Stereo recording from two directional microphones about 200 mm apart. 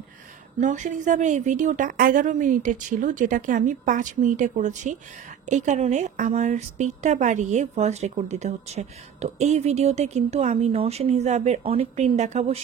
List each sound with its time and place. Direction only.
0.6 s a woman's voice: 35° right (ahead or behind)